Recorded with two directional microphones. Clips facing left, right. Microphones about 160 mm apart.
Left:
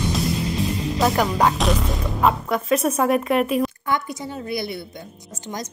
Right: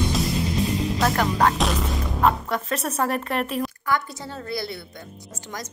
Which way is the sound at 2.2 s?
10° left (ahead or behind).